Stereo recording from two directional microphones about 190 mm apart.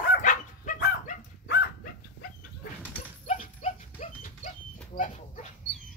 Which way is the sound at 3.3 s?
40° left (ahead or behind).